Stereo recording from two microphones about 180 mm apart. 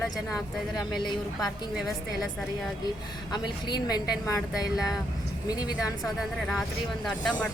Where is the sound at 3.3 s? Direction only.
25° left (ahead or behind).